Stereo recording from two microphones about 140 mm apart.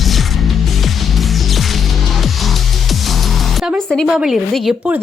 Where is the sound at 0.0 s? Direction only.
Centre (ahead or behind).